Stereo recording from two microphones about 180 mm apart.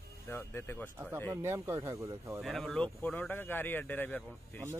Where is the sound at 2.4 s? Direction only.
Centre (ahead or behind).